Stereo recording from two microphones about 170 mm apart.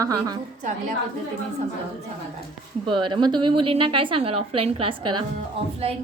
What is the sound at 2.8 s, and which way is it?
Speech, 30° right (ahead or behind).